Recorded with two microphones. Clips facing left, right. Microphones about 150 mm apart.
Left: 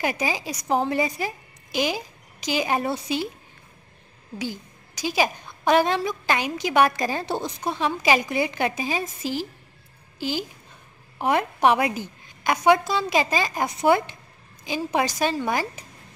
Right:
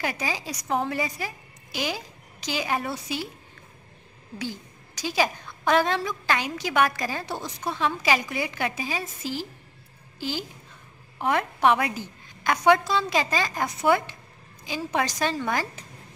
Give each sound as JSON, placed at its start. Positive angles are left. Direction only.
{"t": 0.0, "sound": "a woman's voice", "side_deg": 15}
{"t": 4.4, "sound": "a woman's voice", "side_deg": 10}